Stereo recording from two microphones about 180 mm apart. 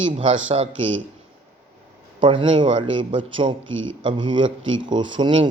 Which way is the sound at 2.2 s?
25° right (ahead or behind).